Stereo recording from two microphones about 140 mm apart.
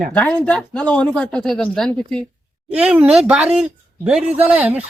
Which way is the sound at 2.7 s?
5° right (ahead or behind).